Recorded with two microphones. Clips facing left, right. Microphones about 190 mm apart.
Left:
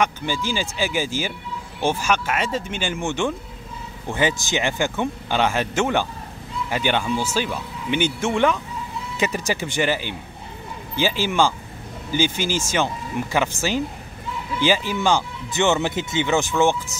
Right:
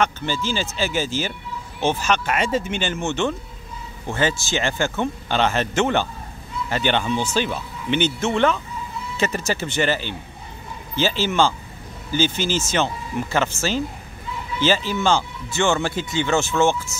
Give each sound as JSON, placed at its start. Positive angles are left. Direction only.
{"t": 0.0, "sound": "speech", "side_deg": 15}
{"t": 2.8, "sound": "speech", "side_deg": 10}